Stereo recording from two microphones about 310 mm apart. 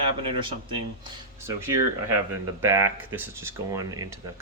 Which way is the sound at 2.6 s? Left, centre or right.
Centre.